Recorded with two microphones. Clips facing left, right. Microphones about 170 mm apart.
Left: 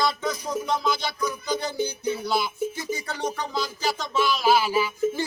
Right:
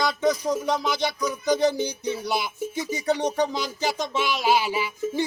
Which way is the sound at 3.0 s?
20° right (ahead or behind).